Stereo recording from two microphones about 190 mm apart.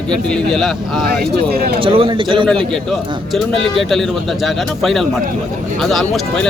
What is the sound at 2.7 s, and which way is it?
Speech, centre (ahead or behind).